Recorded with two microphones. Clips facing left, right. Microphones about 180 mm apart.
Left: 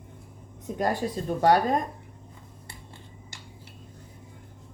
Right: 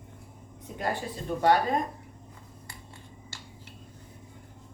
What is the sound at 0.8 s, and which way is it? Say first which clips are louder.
Speech: left 5 dB; 40° left (ahead or behind).